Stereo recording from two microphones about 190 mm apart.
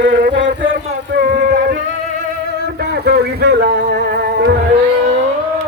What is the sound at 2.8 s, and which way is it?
Music, 55° right (ahead or behind).